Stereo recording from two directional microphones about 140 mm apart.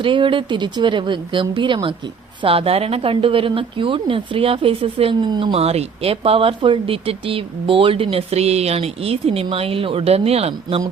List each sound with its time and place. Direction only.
0.0 s a woman's voice: 35° right (ahead or behind)